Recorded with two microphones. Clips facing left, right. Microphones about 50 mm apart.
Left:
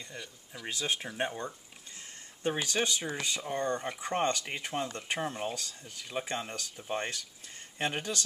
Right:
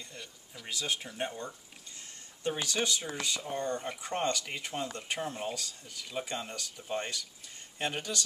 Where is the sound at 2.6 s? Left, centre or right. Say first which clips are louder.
Left 1 dB; left.